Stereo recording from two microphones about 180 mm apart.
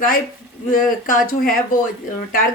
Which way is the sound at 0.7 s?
50° left (ahead or behind).